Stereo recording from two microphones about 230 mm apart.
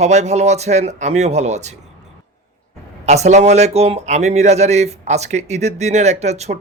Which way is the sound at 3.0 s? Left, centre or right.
Right.